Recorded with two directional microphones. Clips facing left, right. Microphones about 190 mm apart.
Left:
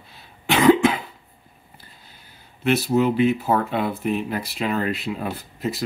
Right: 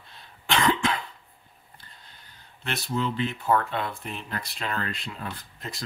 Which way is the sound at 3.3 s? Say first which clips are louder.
Left 4 dB; 5° left (ahead or behind).